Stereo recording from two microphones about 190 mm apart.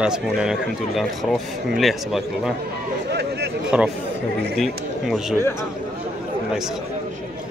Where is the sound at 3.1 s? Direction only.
60° right (ahead or behind).